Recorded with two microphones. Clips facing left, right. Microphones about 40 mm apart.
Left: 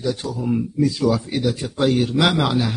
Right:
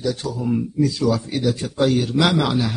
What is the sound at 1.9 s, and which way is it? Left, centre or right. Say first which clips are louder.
Speech: left 1 dB; left.